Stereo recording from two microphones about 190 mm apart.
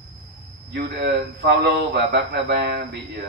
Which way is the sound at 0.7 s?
60° right (ahead or behind).